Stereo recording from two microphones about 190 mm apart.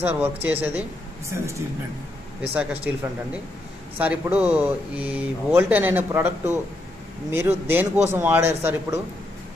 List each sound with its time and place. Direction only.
0.0 s speech: 10° right (ahead or behind)